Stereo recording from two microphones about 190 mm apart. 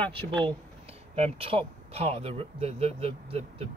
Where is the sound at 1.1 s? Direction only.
30° right (ahead or behind).